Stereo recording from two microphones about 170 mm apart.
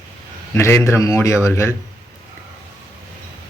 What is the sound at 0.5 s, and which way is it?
Speech, 15° left (ahead or behind).